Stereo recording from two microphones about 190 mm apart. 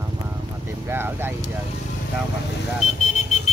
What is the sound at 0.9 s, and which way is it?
Speech, 10° right (ahead or behind).